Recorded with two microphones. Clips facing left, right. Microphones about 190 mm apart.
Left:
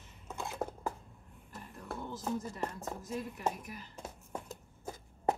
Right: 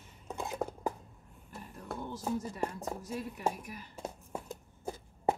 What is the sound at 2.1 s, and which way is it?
A woman's voice, 10° right (ahead or behind).